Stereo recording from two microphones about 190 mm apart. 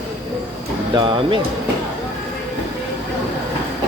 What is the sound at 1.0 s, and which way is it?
Speech, 25° right (ahead or behind).